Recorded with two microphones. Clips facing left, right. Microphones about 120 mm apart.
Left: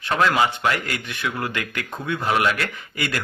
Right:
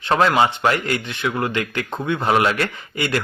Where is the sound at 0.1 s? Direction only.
30° right (ahead or behind).